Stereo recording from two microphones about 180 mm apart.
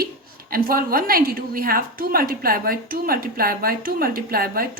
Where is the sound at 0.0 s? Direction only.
55° right (ahead or behind).